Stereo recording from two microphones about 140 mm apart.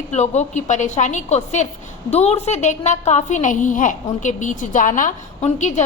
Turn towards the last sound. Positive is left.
turn(degrees=60)  # may be behind; listen again after turning